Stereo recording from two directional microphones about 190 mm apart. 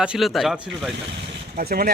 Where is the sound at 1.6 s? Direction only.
50° right (ahead or behind).